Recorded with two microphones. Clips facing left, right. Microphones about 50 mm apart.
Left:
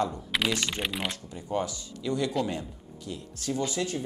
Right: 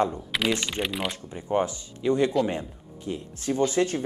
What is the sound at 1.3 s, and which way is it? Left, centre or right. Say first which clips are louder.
Speech: right 7 dB; right.